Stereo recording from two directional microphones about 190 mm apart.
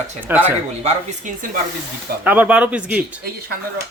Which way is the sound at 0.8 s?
40° right (ahead or behind).